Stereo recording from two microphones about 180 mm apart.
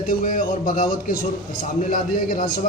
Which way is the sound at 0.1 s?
50° left (ahead or behind).